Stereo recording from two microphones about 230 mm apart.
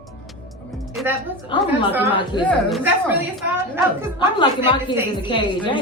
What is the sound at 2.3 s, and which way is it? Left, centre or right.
Speech, centre.